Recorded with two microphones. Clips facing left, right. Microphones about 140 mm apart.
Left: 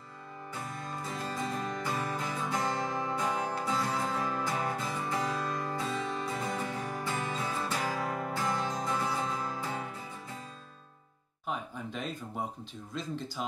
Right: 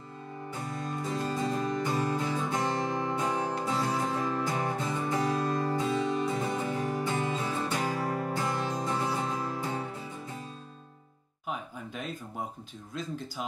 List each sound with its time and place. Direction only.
1.1 s music: 25° right (ahead or behind)
11.4 s music: 5° right (ahead or behind)
12.9 s speech: 5° right (ahead or behind)